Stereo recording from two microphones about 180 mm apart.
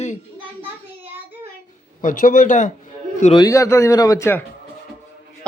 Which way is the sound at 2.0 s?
50° left (ahead or behind).